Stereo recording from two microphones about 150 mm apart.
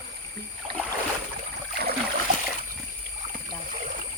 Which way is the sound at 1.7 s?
90° right.